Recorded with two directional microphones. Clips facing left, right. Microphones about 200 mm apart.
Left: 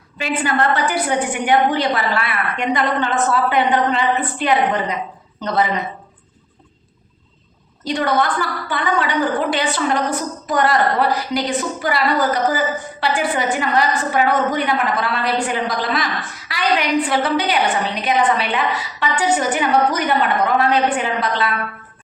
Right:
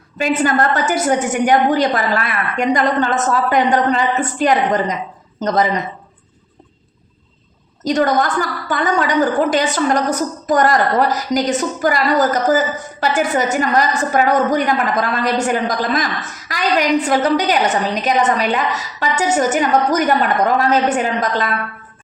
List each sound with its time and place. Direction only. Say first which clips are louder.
0.2 s a woman's voice: right 4 dB; 45° right (ahead or behind)
7.9 s a woman's voice: right 3 dB; 40° right (ahead or behind)